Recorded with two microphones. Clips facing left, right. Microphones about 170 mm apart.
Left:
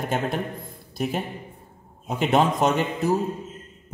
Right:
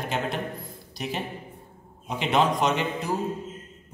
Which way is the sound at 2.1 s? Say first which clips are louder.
Left 3 dB; 45° left (ahead or behind).